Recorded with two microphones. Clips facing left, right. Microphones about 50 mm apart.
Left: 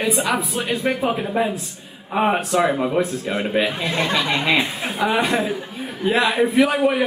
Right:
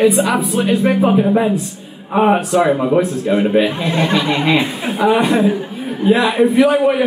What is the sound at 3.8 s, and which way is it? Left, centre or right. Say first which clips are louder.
Speech: right 5 dB; right.